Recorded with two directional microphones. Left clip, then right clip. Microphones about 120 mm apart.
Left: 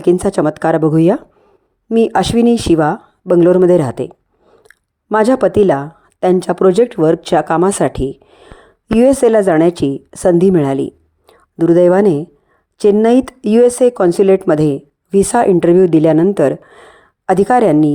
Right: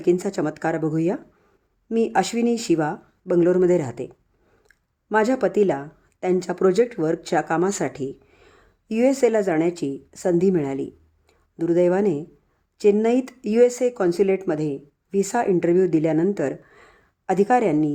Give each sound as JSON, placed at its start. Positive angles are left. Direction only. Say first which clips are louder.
{"t": 0.0, "sound": "speech", "louder": "left 9 dB", "side_deg": 40}
{"t": 5.1, "sound": "a woman's voice", "louder": "left 9 dB", "side_deg": 40}